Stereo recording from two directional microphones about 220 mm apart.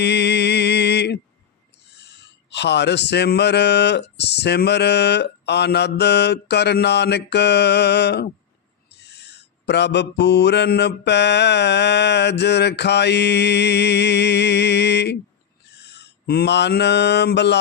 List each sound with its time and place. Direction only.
0.0 s mantra: 50° left (ahead or behind)